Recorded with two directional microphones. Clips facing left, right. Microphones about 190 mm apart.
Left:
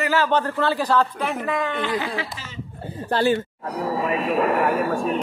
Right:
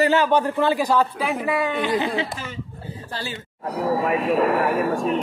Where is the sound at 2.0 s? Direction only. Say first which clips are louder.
Right 4 dB; 20° right (ahead or behind).